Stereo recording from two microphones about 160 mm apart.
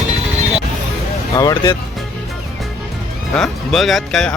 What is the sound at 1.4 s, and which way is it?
Speech, 25° left (ahead or behind).